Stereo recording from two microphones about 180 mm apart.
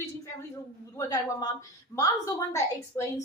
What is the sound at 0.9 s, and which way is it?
A woman's voice, 20° left (ahead or behind).